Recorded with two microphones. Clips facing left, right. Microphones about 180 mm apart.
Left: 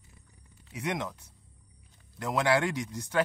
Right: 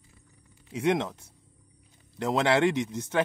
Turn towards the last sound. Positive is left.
turn(degrees=-25)  # may be behind; listen again after turning